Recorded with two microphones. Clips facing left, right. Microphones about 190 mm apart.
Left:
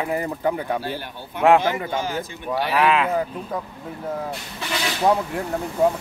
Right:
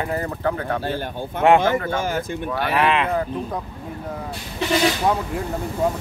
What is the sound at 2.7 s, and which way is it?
Speech, centre (ahead or behind).